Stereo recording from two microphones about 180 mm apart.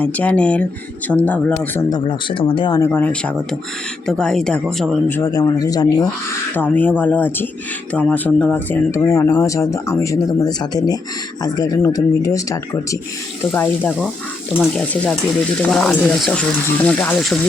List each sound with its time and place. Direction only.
0.0 s speech: 5° left (ahead or behind)
2.0 s speech: 30° left (ahead or behind)
6.5 s speech: 10° left (ahead or behind)